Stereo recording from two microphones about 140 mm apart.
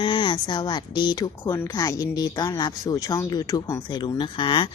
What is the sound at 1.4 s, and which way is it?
Speech, 20° left (ahead or behind).